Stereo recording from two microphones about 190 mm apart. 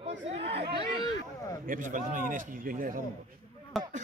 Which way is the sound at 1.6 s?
45° right (ahead or behind).